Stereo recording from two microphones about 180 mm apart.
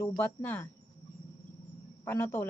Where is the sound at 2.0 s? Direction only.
10° left (ahead or behind).